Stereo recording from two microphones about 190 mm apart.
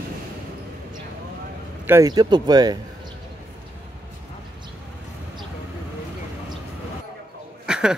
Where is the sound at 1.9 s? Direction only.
15° right (ahead or behind).